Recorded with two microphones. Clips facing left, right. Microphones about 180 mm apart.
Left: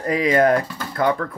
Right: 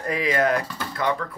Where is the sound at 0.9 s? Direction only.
45° left (ahead or behind).